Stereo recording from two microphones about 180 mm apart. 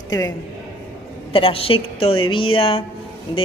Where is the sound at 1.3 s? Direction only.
30° left (ahead or behind).